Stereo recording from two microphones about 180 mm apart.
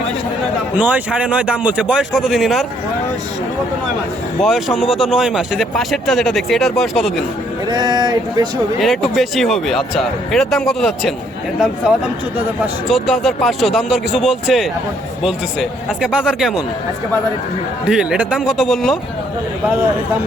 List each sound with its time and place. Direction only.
0.8 s speech: 10° right (ahead or behind)
4.4 s speech: centre (ahead or behind)
7.7 s speech: 25° right (ahead or behind)
8.8 s speech: centre (ahead or behind)
12.9 s speech: centre (ahead or behind)
17.8 s speech: 5° right (ahead or behind)